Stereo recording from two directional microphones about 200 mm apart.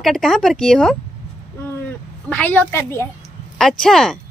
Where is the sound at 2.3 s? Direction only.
10° left (ahead or behind).